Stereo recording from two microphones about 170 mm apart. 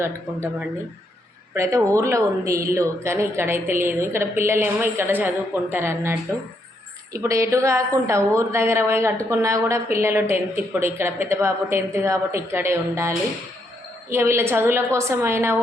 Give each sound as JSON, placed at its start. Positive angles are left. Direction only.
{"t": 1.5, "sound": "speech", "side_deg": -20}
{"t": 7.2, "sound": "speech", "side_deg": -20}